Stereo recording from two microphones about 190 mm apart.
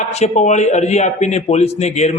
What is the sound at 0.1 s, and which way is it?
A man's voice, 35° left (ahead or behind).